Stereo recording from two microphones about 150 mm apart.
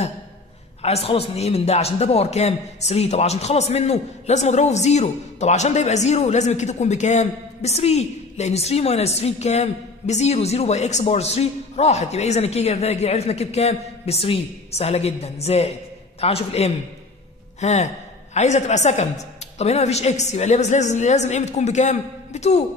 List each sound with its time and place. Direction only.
0.8 s a man's voice: 40° left (ahead or behind)